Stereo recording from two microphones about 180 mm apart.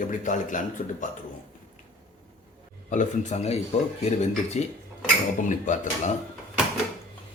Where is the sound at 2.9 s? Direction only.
40° left (ahead or behind).